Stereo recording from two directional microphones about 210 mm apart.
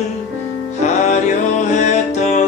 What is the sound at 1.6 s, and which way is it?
Music, 35° left (ahead or behind).